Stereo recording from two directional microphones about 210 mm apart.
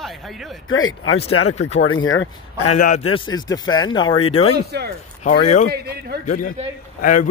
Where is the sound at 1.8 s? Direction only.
70° left (ahead or behind).